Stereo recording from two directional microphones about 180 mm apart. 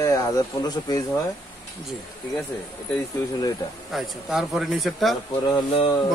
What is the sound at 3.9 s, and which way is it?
Speech, centre (ahead or behind).